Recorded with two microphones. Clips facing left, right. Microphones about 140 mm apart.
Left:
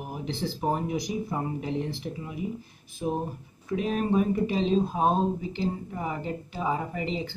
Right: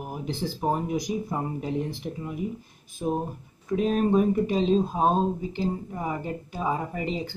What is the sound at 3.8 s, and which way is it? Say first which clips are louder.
Speech: right 3 dB; 45° right (ahead or behind).